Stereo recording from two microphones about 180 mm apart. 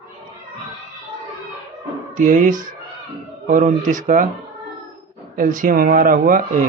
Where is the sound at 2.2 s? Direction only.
45° right (ahead or behind).